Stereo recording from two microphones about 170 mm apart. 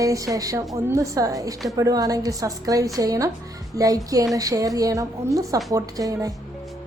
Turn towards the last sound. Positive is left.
turn(degrees=-20)  # may be behind; listen again after turning